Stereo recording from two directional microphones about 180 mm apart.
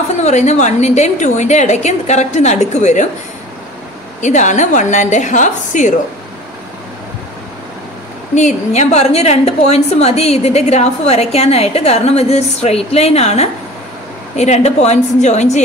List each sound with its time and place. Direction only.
0.2 s a woman's voice: 40° left (ahead or behind)
4.2 s a woman's voice: 40° left (ahead or behind)
8.4 s a woman's voice: 40° left (ahead or behind)